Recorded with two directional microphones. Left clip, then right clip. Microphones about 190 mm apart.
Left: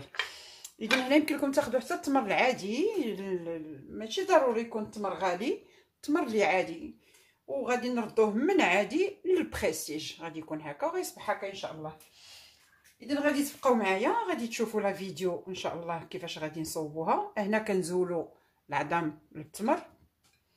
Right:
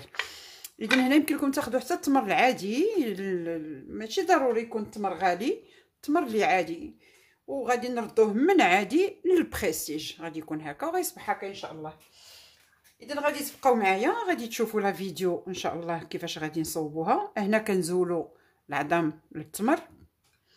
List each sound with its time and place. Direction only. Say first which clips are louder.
0.4 s a sound: right 3 dB; 40° right (ahead or behind)
1.0 s speech: right 2 dB; 35° right (ahead or behind)
4.0 s a woman's voice: right 1 dB; 50° right (ahead or behind)
5.2 s speech: right 5 dB; 40° right (ahead or behind)
6.0 s speech: right 3 dB; 25° right (ahead or behind)
7.8 s a woman's voice: right 3 dB; 50° right (ahead or behind)
13.0 s a woman's voice: even; 55° right (ahead or behind)